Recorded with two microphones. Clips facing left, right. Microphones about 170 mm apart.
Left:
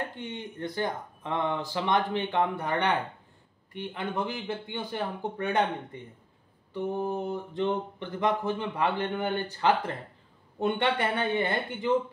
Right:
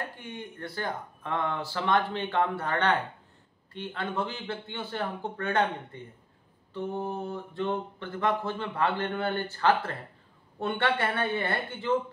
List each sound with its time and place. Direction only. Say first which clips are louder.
0.2 s mantra: left 4 dB; 20° left (ahead or behind)